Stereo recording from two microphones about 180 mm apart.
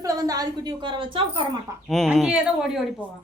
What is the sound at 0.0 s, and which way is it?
A woman's voice, 20° right (ahead or behind).